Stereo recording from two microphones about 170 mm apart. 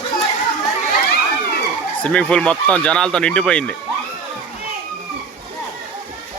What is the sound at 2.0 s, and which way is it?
Speech, 5° left (ahead or behind).